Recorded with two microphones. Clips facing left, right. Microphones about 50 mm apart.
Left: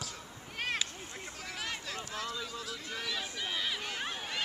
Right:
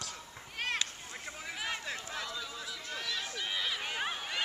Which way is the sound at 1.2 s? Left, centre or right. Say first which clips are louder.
Right 2 dB; centre.